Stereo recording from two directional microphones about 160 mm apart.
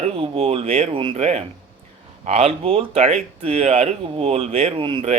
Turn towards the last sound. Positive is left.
turn(degrees=-35)  # may be behind; listen again after turning